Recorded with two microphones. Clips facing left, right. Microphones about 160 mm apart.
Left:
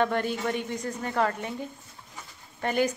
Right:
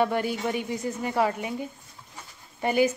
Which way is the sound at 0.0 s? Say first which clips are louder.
Right 1 dB; 10° right (ahead or behind).